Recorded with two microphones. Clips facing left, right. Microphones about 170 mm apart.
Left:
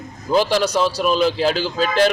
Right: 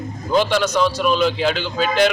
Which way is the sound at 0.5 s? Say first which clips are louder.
Even; 35° left (ahead or behind).